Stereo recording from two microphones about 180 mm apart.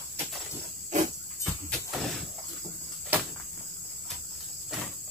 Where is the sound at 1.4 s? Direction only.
Centre (ahead or behind).